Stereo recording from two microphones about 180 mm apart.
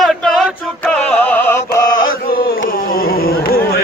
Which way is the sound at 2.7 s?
55° left (ahead or behind).